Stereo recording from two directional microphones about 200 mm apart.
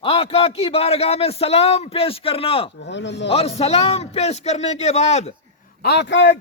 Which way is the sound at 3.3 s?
30° left (ahead or behind).